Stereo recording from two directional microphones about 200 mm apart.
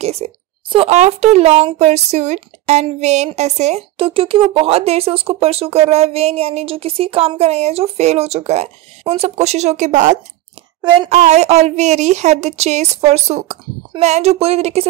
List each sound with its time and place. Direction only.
0.0 s speech: 30° right (ahead or behind)